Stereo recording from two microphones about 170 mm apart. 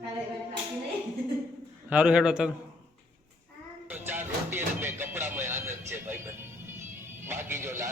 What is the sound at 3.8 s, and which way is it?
Music, 10° right (ahead or behind).